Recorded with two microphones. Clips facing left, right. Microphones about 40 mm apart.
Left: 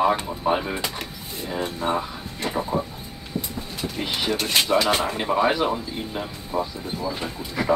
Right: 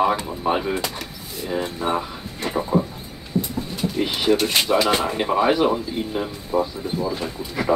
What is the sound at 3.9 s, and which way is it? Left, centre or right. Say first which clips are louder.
Speech: right 6 dB; centre.